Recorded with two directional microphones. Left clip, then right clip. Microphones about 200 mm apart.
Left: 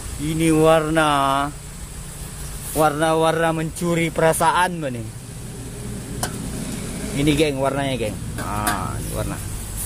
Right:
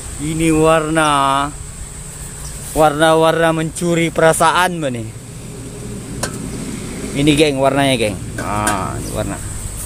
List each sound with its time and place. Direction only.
0.2 s speech: centre (ahead or behind)
2.7 s speech: 15° right (ahead or behind)
7.2 s speech: 15° right (ahead or behind)